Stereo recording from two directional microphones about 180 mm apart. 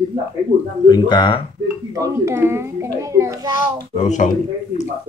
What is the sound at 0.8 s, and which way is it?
Speech, 25° left (ahead or behind).